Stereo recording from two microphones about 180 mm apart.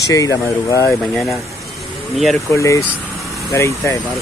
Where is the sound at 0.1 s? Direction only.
20° left (ahead or behind).